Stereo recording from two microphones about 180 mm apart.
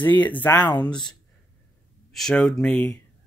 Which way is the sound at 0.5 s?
25° left (ahead or behind).